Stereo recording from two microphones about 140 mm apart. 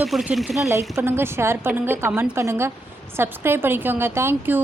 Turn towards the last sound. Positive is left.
turn(degrees=-15)  # may be behind; listen again after turning